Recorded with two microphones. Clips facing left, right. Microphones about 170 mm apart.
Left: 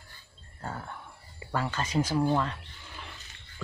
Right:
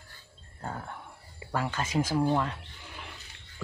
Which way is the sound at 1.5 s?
10° right (ahead or behind).